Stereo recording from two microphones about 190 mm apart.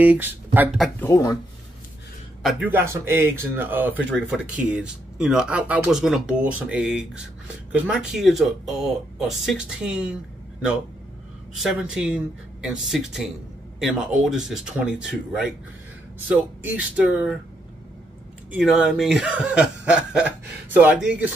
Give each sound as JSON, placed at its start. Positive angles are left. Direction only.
{"t": 0.0, "sound": "speech", "side_deg": -10}
{"t": 1.0, "sound": "speech", "side_deg": 20}
{"t": 2.7, "sound": "speech", "side_deg": -15}
{"t": 11.5, "sound": "speech", "side_deg": 0}
{"t": 16.3, "sound": "speech", "side_deg": -5}
{"t": 18.5, "sound": "speech", "side_deg": -5}